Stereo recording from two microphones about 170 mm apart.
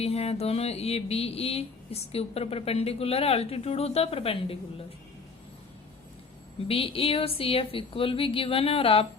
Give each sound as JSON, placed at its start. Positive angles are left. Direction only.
{"t": 0.0, "sound": "mantra", "side_deg": 35}
{"t": 6.7, "sound": "mantra", "side_deg": 35}